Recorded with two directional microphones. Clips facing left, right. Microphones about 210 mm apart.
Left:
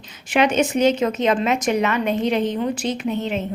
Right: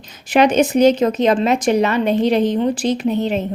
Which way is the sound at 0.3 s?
40° right (ahead or behind).